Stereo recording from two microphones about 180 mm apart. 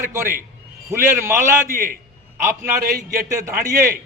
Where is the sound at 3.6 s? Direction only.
50° right (ahead or behind).